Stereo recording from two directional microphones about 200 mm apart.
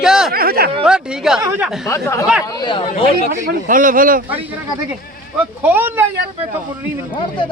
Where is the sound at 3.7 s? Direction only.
45° right (ahead or behind).